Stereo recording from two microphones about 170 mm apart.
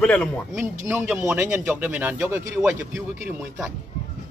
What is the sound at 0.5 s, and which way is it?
Speech, 10° right (ahead or behind).